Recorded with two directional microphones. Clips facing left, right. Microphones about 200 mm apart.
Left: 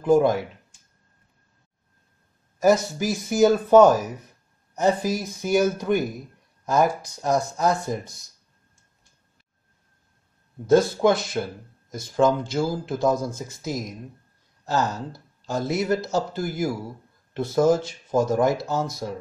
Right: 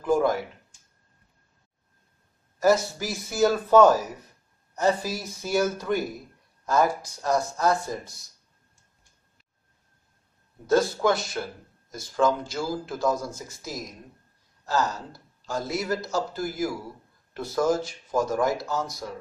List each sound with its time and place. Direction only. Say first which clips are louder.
0.0 s speech: left 5 dB; 20° left (ahead or behind)
2.6 s speech: left 2 dB; 15° left (ahead or behind)
10.7 s speech: left 4 dB; 20° left (ahead or behind)